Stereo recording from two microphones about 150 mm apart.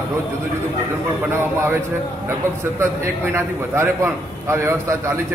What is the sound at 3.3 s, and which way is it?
A man's voice, 15° right (ahead or behind).